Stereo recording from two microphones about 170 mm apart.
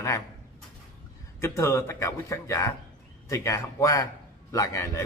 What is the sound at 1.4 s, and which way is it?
A man's voice, 15° left (ahead or behind).